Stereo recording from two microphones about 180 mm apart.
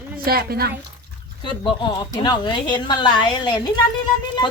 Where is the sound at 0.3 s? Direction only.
55° right (ahead or behind).